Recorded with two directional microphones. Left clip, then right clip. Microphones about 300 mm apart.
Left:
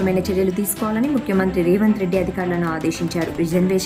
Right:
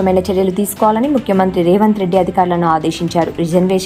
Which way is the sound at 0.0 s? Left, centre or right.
Centre.